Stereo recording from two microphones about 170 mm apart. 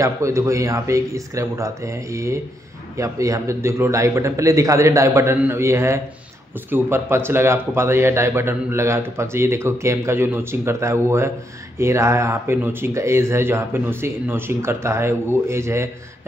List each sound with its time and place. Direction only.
0.0 s a man's voice: 15° right (ahead or behind)